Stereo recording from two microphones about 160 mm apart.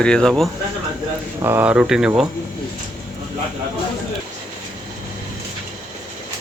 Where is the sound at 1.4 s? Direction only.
15° right (ahead or behind).